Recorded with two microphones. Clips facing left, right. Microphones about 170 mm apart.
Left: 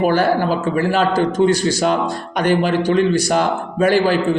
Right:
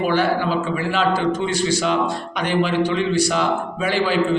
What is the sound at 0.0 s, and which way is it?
A man's voice, 45° left (ahead or behind).